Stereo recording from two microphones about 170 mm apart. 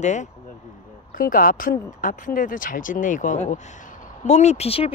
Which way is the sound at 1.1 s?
55° left (ahead or behind).